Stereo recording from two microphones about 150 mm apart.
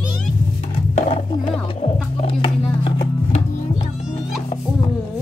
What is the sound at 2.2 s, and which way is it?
Music, 35° left (ahead or behind).